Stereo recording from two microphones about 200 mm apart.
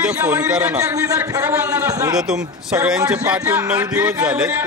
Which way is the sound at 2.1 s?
5° right (ahead or behind).